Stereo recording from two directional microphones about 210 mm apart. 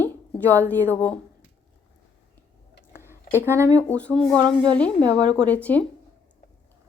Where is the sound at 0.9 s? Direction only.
10° left (ahead or behind).